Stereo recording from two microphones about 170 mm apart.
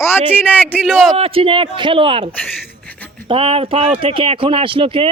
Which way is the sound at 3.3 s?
30° right (ahead or behind).